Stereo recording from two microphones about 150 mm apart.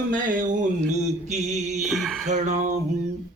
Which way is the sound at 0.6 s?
50° right (ahead or behind).